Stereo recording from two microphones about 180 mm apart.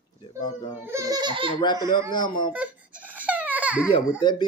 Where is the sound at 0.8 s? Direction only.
15° right (ahead or behind).